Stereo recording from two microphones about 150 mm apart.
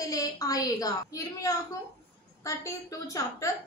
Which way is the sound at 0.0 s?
25° left (ahead or behind).